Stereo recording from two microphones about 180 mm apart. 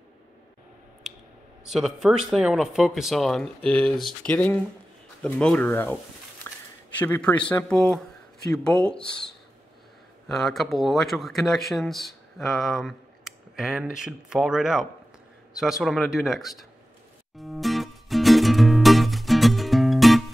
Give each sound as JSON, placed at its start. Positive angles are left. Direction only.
{"t": 1.7, "sound": "speech", "side_deg": 0}
{"t": 6.5, "sound": "a sound", "side_deg": 15}
{"t": 7.0, "sound": "speech", "side_deg": 10}
{"t": 17.4, "sound": "music", "side_deg": 0}